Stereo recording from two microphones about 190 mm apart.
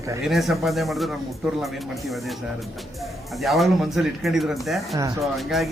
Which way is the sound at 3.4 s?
Centre (ahead or behind).